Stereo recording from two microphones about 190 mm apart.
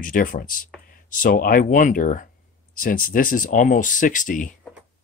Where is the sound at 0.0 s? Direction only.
45° left (ahead or behind).